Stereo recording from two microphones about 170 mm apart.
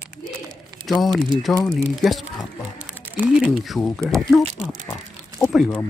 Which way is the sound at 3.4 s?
Centre (ahead or behind).